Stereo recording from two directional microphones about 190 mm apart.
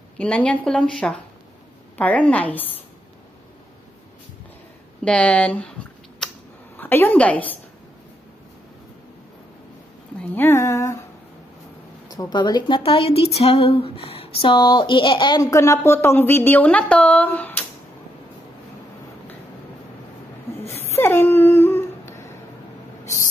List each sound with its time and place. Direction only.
0.2 s a woman's voice: 5° left (ahead or behind)
5.0 s a woman's voice: 5° left (ahead or behind)
6.2 s a sound: centre (ahead or behind)
6.8 s a woman's voice: 10° left (ahead or behind)
10.3 s a woman's voice: 10° left (ahead or behind)
12.1 s a woman's voice: 20° left (ahead or behind)
20.9 s dog: 10° left (ahead or behind)